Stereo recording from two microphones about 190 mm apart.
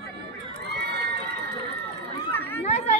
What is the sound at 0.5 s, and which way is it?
Crowd, 60° right (ahead or behind).